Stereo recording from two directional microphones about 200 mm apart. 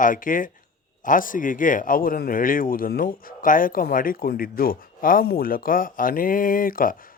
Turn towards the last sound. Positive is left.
turn(degrees=45)  # may be behind; listen again after turning